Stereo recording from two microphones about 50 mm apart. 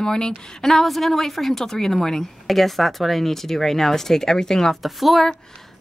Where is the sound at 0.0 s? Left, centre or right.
Centre.